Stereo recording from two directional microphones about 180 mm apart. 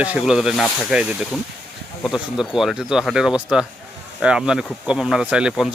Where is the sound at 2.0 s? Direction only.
Centre (ahead or behind).